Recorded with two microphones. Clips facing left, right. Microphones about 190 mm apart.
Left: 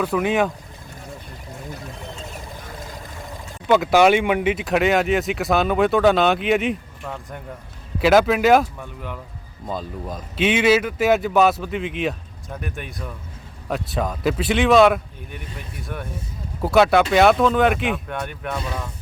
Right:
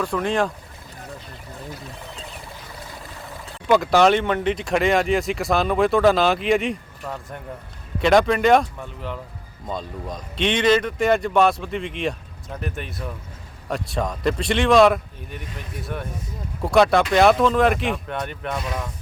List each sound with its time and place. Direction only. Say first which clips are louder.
0.0 s speech: left 2 dB; 5° left (ahead or behind)
3.7 s speech: left 1 dB; 5° left (ahead or behind)
16.6 s speech: left 1 dB; centre (ahead or behind)